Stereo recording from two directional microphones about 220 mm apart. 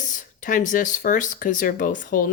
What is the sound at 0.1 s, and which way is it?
Speech, 35° left (ahead or behind).